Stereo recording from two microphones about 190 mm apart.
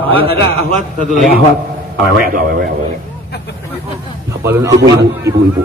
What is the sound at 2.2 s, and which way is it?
Speech, 50° right (ahead or behind).